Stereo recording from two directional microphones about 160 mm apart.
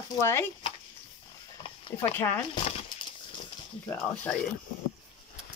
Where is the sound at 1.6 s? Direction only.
35° left (ahead or behind).